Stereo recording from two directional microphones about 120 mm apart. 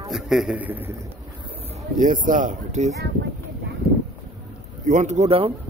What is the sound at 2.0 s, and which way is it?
Speech, 90° right.